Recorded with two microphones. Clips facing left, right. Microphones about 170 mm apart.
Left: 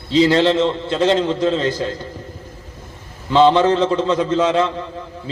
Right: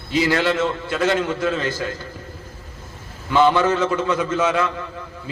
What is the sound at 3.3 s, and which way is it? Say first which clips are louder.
A man's voice: left 4 dB; 20° left (ahead or behind).